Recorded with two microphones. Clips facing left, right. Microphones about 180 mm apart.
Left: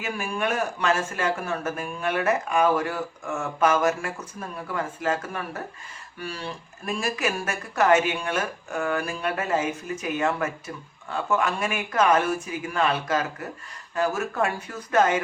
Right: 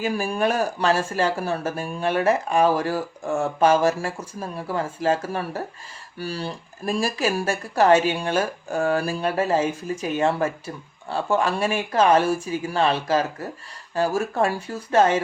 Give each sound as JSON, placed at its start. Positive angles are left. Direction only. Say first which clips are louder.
{"t": 0.0, "sound": "speech", "louder": "right 5 dB", "side_deg": -35}